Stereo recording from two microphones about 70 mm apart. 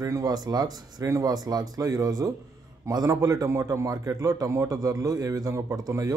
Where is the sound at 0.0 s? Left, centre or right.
Right.